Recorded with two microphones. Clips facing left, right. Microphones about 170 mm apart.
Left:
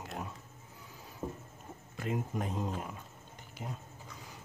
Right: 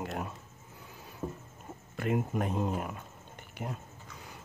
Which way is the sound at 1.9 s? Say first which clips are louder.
Right 5 dB; 60° right (ahead or behind).